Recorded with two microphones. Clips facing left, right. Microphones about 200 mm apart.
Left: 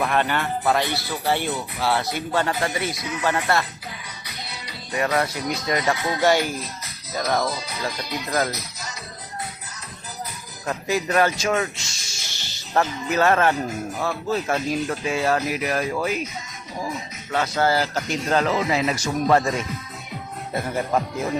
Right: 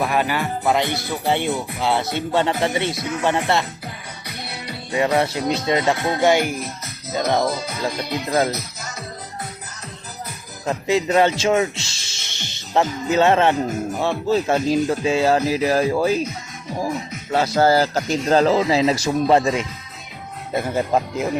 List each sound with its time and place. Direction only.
0.0 s speech: 5° right (ahead or behind)
0.6 s speech: 20° right (ahead or behind)
4.3 s music: 60° right (ahead or behind)
4.9 s speech: 25° right (ahead or behind)
6.0 s speech: 55° right (ahead or behind)
6.2 s speech: 20° right (ahead or behind)
7.5 s music: 50° right (ahead or behind)
7.9 s speech: 55° right (ahead or behind)
8.3 s speech: 25° right (ahead or behind)
10.7 s speech: 25° right (ahead or behind)
17.3 s speech: 35° right (ahead or behind)